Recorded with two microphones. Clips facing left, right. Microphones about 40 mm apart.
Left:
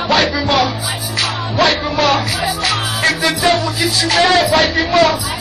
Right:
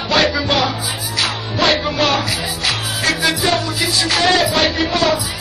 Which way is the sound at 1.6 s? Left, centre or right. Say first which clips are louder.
Left 2 dB; left.